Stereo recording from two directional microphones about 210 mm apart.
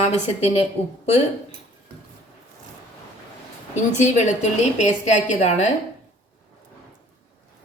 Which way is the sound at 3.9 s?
35° left (ahead or behind).